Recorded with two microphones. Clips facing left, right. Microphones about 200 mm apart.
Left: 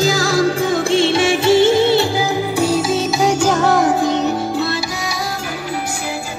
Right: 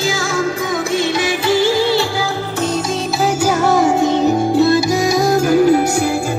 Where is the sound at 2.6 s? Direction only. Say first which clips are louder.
Left 2 dB; 5° left (ahead or behind); by 4.7 s 15° right (ahead or behind).